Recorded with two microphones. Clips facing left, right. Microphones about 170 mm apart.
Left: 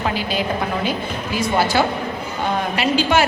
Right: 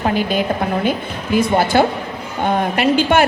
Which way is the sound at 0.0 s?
50° right (ahead or behind).